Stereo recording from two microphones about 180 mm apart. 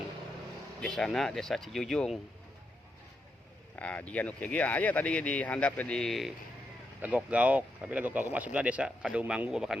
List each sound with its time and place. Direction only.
0.8 s speech: 5° left (ahead or behind)
3.8 s speech: 5° left (ahead or behind)